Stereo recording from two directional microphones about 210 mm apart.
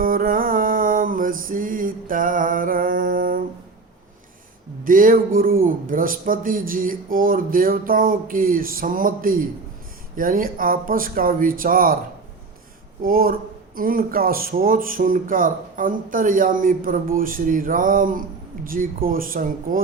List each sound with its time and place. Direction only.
0.0 s music: 40° right (ahead or behind)
4.8 s speech: 40° right (ahead or behind)
13.0 s speech: 45° right (ahead or behind)